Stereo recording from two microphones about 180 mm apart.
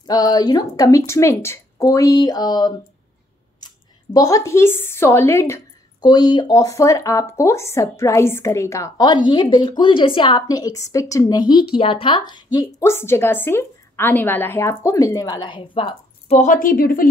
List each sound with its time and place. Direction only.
0.0 s a woman's voice: 20° left (ahead or behind)
16.3 s a woman's voice: 50° left (ahead or behind)